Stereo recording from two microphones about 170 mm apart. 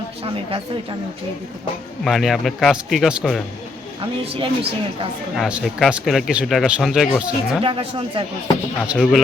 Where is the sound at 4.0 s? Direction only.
30° right (ahead or behind).